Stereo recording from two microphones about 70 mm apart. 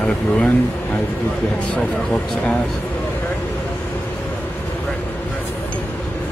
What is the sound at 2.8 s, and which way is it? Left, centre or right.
Vehicle, left.